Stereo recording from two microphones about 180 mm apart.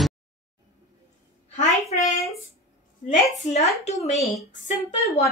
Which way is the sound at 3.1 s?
40° left (ahead or behind).